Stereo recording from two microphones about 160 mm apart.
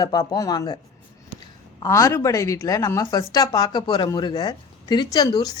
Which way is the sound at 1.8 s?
20° left (ahead or behind).